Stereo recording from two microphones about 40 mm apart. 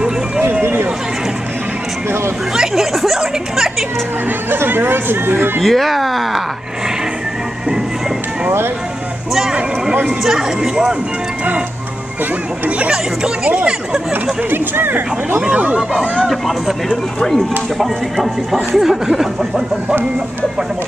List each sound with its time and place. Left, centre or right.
0.4 s a sound: right
2.7 s a sound: centre
4.5 s speech: right
5.6 s speech: centre
10.2 s speech: centre
12.6 s speech: right
12.9 s speech: centre
14.5 s speech: right
15.5 s speech: right
16.3 s speech: centre
17.2 s speech: centre
17.7 s speech: centre